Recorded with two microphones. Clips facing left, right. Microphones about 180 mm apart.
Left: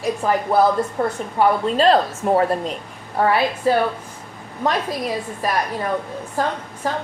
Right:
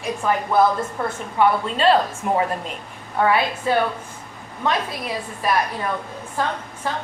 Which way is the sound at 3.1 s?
35° left (ahead or behind).